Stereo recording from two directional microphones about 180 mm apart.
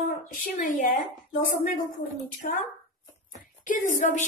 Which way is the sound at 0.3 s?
50° left (ahead or behind).